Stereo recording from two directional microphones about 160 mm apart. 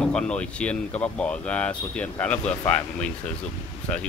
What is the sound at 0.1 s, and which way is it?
Speech, 5° left (ahead or behind).